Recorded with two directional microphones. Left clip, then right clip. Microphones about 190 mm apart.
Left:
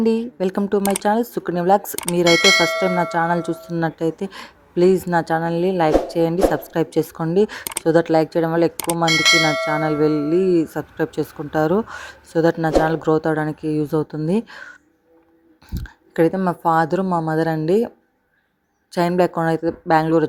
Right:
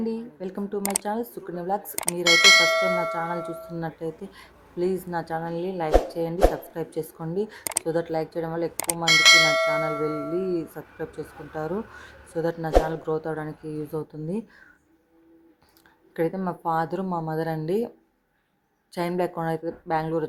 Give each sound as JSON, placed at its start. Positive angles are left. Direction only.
{"t": 0.0, "sound": "speech", "side_deg": 40}
{"t": 2.2, "sound": "speech", "side_deg": 0}
{"t": 3.0, "sound": "speech", "side_deg": 40}
{"t": 8.7, "sound": "speech", "side_deg": 0}
{"t": 10.3, "sound": "speech", "side_deg": 35}